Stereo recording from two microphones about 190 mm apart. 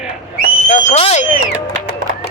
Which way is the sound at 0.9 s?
35° left (ahead or behind).